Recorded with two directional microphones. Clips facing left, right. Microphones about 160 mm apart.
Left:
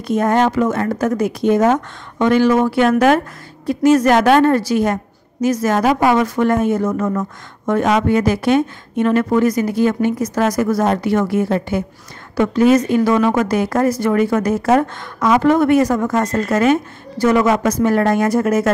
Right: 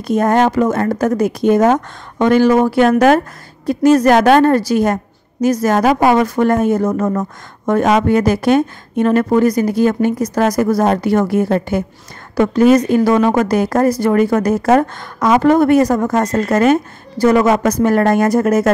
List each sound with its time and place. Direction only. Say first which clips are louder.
0.0 s a woman's voice: right 2 dB; 40° right (ahead or behind)